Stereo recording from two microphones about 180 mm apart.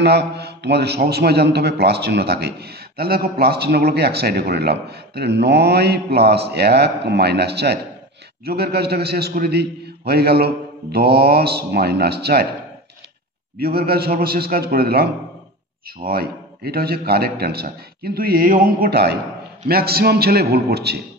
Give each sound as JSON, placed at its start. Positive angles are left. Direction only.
{"t": 0.0, "sound": "a man's voice", "side_deg": -65}
{"t": 13.6, "sound": "a man's voice", "side_deg": -60}
{"t": 16.1, "sound": "a man's voice", "side_deg": -60}